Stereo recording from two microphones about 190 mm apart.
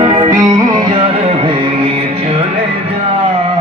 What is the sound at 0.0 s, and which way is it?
Music, 20° right (ahead or behind).